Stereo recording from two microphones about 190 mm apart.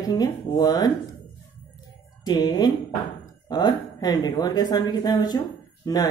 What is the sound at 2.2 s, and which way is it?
Speech, 20° left (ahead or behind).